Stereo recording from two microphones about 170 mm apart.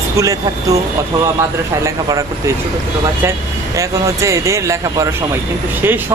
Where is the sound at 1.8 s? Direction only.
15° right (ahead or behind).